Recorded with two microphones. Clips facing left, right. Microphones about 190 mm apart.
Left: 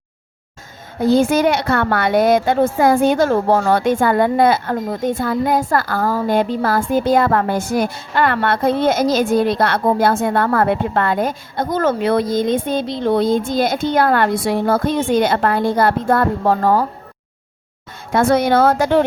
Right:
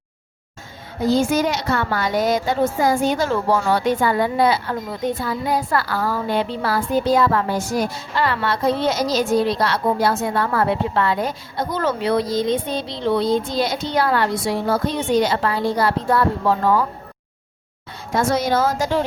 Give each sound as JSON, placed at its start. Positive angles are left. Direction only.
{"t": 1.0, "sound": "a woman's voice", "side_deg": 55}
{"t": 18.1, "sound": "a woman's voice", "side_deg": 60}